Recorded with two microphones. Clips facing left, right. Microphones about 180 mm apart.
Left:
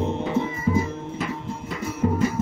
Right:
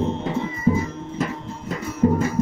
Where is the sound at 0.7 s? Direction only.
40° right (ahead or behind).